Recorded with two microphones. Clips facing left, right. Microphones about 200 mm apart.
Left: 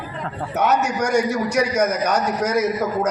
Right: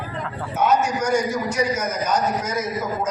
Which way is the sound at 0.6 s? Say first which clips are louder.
Even; 65° left (ahead or behind).